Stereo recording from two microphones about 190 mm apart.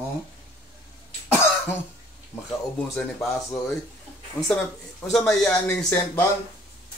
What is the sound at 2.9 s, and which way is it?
Speech, centre (ahead or behind).